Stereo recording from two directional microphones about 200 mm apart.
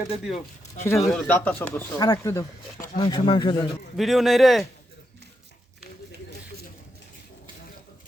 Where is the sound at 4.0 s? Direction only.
Centre (ahead or behind).